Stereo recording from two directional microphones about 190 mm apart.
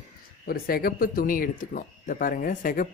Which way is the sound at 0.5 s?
50° left (ahead or behind).